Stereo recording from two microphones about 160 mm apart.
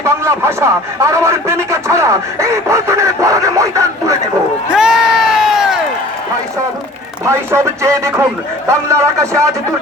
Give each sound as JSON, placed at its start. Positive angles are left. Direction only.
{"t": 0.0, "sound": "speech", "side_deg": -15}
{"t": 4.7, "sound": "crowd", "side_deg": -5}
{"t": 7.3, "sound": "speech", "side_deg": -15}